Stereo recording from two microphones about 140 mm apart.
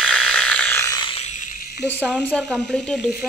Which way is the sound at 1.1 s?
60° left (ahead or behind).